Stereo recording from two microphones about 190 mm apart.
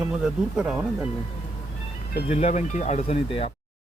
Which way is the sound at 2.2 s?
35° left (ahead or behind).